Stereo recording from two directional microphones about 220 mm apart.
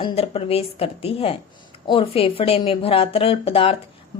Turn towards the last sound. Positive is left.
turn(degrees=25)  # may be behind; listen again after turning